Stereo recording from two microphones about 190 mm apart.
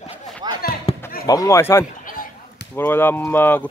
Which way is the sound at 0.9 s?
30° left (ahead or behind).